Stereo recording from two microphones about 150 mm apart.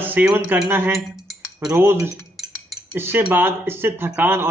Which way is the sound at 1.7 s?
20° right (ahead or behind).